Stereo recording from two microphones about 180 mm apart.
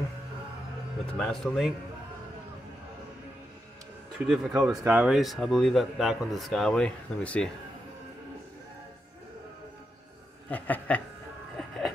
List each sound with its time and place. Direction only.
1.1 s a man's voice: 5° left (ahead or behind)
4.3 s a man's voice: centre (ahead or behind)
10.5 s speech: 10° left (ahead or behind)
11.5 s a sound: centre (ahead or behind)